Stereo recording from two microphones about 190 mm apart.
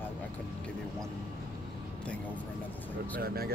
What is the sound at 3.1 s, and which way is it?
Speech, 55° right (ahead or behind).